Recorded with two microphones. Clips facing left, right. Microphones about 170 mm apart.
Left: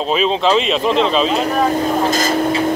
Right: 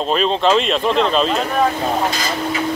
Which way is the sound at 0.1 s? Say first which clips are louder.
Left 1 dB; centre (ahead or behind).